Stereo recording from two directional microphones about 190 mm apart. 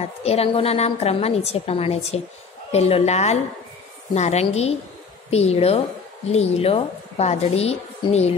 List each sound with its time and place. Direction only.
0.2 s a woman's voice: 35° left (ahead or behind)